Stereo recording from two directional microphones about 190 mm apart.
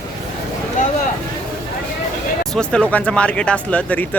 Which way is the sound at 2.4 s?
5° left (ahead or behind).